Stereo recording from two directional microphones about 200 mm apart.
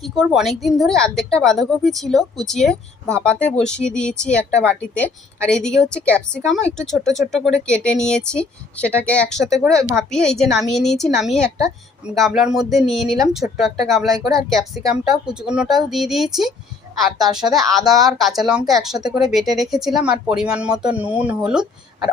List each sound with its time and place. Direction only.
0.0 s a woman's voice: centre (ahead or behind)
11.4 s a woman's voice: 15° right (ahead or behind)
12.0 s a woman's voice: centre (ahead or behind)
18.9 s speech: 20° right (ahead or behind)
19.2 s a woman's voice: centre (ahead or behind)